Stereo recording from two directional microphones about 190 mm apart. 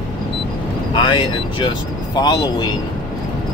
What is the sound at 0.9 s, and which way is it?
Speech, 25° left (ahead or behind).